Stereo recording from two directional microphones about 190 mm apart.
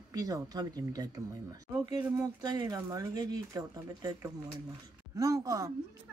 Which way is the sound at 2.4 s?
20° right (ahead or behind).